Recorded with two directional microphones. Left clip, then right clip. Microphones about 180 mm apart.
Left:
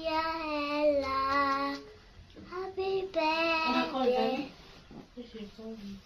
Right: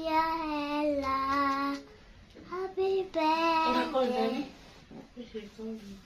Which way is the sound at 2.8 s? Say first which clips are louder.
Right 2 dB; 25° right (ahead or behind).